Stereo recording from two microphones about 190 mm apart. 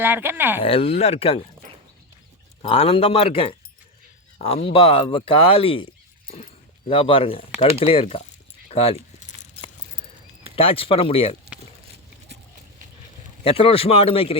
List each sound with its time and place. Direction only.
0.0 s speech: 10° right (ahead or behind)
0.6 s speech: 30° left (ahead or behind)
2.6 s speech: 30° left (ahead or behind)
8.7 s keys jangling: 30° left (ahead or behind)
10.5 s speech: 30° left (ahead or behind)
13.4 s speech: 30° left (ahead or behind)